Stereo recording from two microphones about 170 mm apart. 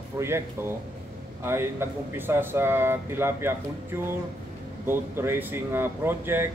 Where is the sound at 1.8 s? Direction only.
15° right (ahead or behind).